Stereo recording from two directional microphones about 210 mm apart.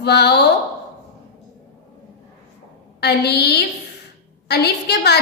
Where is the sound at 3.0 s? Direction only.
50° left (ahead or behind).